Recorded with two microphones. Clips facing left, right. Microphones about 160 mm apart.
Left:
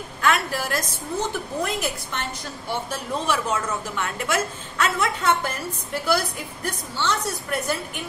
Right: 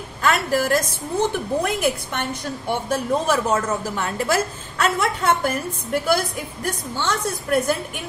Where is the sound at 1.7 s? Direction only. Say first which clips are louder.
Right 6 dB; 55° right (ahead or behind).